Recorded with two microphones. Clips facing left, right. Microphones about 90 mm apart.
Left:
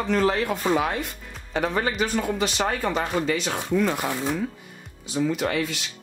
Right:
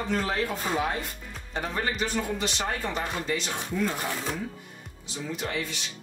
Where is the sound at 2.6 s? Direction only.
90° left.